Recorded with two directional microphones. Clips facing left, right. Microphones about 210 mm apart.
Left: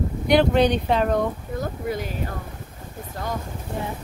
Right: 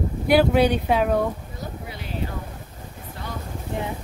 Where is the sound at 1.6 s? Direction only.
45° left (ahead or behind).